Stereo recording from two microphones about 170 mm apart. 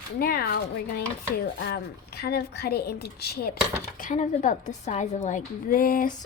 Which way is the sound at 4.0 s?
50° left (ahead or behind).